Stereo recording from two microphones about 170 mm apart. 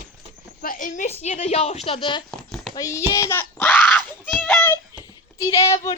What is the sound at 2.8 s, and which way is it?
A woman's voice, 20° left (ahead or behind).